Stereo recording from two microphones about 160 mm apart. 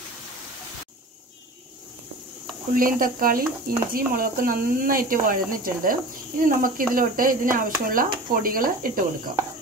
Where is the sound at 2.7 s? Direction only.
60° right (ahead or behind).